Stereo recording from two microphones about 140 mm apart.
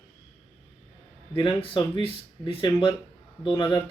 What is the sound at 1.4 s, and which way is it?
Speech, 35° left (ahead or behind).